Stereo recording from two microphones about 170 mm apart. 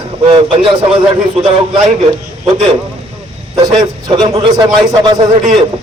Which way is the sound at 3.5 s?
20° right (ahead or behind).